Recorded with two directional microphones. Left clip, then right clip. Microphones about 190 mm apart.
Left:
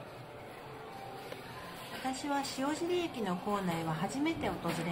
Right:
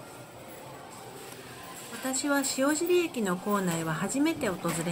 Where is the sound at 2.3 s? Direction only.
25° right (ahead or behind).